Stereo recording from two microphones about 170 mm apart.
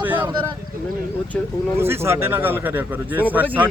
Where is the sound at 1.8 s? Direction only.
15° right (ahead or behind).